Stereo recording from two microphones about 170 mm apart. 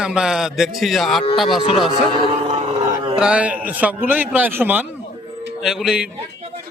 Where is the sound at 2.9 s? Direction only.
25° right (ahead or behind).